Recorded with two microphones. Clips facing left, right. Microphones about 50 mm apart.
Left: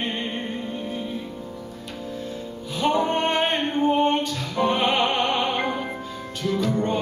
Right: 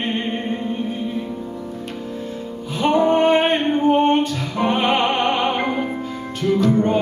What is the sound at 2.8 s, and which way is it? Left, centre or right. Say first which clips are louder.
Music: right 6 dB; right.